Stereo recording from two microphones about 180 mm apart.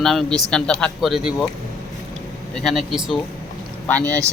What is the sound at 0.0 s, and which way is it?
Speech, centre (ahead or behind).